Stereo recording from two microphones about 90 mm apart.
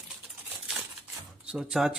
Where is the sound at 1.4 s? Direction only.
10° right (ahead or behind).